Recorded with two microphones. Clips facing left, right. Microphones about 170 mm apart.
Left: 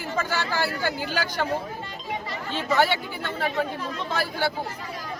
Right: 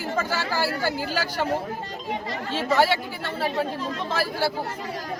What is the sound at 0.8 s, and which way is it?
Speech, 35° right (ahead or behind).